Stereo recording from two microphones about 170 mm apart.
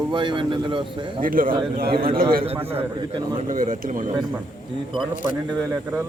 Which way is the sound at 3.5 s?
50° right (ahead or behind).